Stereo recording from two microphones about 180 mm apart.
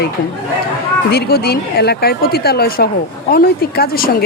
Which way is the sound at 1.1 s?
60° left (ahead or behind).